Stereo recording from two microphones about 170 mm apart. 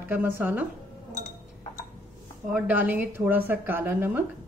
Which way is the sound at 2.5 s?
10° right (ahead or behind).